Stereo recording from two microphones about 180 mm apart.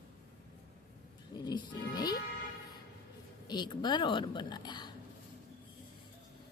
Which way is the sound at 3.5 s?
25° left (ahead or behind).